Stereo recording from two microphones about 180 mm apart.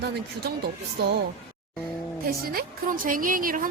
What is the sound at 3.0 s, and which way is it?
Speech, 50° right (ahead or behind).